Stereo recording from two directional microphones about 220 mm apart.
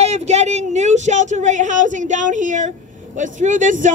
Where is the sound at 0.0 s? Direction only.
30° right (ahead or behind).